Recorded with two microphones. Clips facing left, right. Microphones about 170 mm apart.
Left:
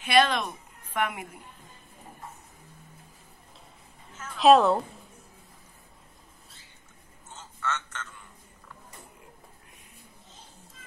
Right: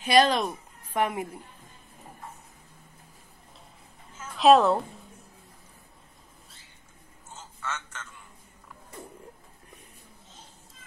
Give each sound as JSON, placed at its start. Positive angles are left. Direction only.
{"t": 0.0, "sound": "a woman's voice", "side_deg": -35}
{"t": 4.2, "sound": "a woman's voice", "side_deg": 0}
{"t": 7.2, "sound": "a sound", "side_deg": -10}